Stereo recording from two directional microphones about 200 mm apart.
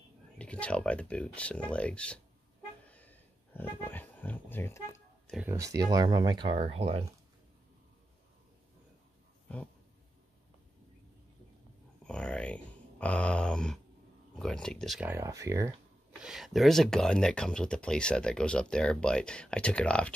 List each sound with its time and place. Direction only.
0.4 s speech: 5° left (ahead or behind)
2.9 s a sound: 10° left (ahead or behind)
5.3 s speech: 10° right (ahead or behind); by 7.1 s 30° right (ahead or behind)
12.0 s a sound: 5° left (ahead or behind)
14.3 s speech: 5° left (ahead or behind); by 15.7 s 15° right (ahead or behind)
16.2 s speech: 5° right (ahead or behind)